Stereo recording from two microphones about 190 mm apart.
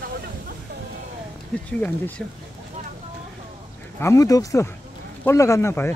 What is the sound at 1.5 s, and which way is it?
Speech, 5° left (ahead or behind).